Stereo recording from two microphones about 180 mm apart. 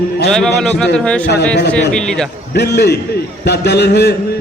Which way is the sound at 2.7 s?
65° left (ahead or behind).